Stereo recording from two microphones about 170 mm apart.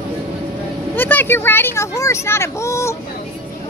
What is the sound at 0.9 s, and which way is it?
Speech, 10° left (ahead or behind).